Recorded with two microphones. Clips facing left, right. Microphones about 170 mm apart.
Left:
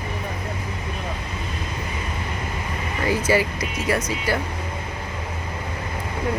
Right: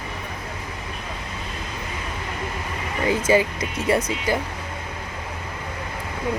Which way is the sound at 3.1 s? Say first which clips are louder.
Right 2 dB; 20° right (ahead or behind).